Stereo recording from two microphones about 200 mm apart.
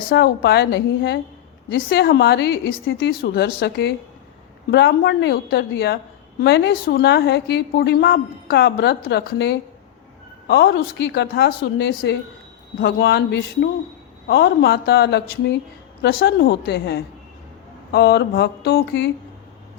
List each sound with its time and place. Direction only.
0.1 s a woman's voice: 55° left (ahead or behind)
17.9 s mantra: 55° left (ahead or behind)